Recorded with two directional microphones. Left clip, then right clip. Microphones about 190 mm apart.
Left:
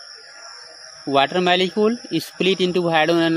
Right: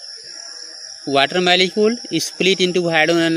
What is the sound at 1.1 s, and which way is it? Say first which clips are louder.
Speech: right 2 dB; 15° right (ahead or behind).